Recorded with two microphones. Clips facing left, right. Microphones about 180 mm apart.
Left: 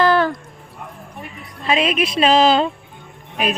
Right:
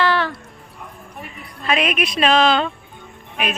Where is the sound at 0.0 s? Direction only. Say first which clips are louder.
Left 4 dB; 40° left (ahead or behind).